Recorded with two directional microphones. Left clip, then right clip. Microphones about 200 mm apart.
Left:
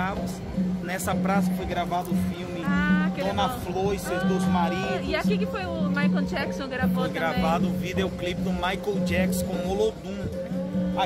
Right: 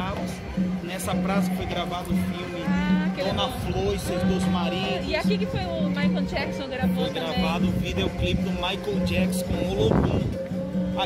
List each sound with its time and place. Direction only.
2.7 s music: 5° left (ahead or behind)
3.3 s speech: 40° left (ahead or behind)
5.1 s speech: 10° left (ahead or behind)
7.4 s speech: 40° left (ahead or behind)